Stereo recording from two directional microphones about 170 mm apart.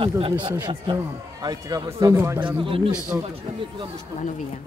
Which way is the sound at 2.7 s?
30° right (ahead or behind).